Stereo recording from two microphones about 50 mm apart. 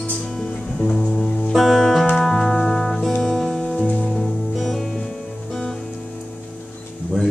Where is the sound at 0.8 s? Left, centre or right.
Centre.